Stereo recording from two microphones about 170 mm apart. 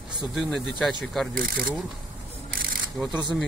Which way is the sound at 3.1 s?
25° right (ahead or behind).